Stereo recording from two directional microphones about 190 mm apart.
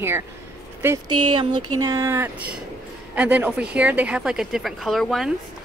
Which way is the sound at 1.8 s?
20° right (ahead or behind).